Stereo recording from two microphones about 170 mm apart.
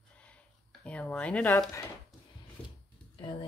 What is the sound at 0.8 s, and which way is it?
Speech, 5° left (ahead or behind).